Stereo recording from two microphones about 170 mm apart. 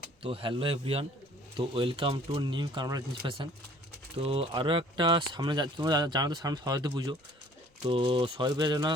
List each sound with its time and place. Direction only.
0.2 s a man's voice: 30° right (ahead or behind)